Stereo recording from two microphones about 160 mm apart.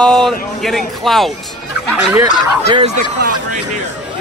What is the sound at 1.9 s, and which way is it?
Fowl, 10° right (ahead or behind).